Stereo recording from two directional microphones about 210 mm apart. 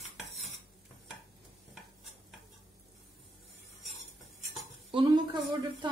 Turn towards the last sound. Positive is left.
turn(degrees=-20)  # may be behind; listen again after turning